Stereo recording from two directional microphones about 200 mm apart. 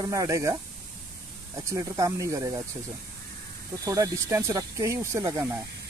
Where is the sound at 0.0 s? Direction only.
15° right (ahead or behind).